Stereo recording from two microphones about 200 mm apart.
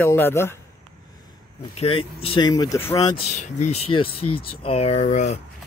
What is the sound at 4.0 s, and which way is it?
Speech, 25° left (ahead or behind).